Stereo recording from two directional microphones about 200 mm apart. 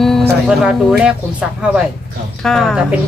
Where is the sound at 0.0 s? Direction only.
Centre (ahead or behind).